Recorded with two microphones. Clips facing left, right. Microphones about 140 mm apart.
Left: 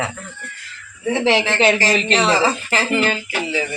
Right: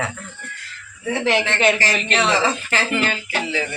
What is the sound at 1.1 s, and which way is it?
Speech, 30° left (ahead or behind).